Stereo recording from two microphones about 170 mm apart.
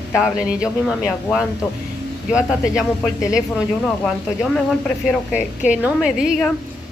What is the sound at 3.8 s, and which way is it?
Speech, 5° left (ahead or behind).